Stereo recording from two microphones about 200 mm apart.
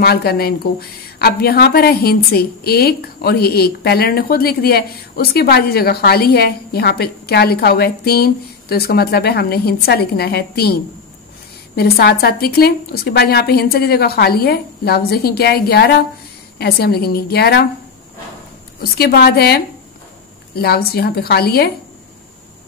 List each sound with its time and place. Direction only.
0.0 s a woman's voice: 50° left (ahead or behind)
18.8 s a woman's voice: 50° left (ahead or behind)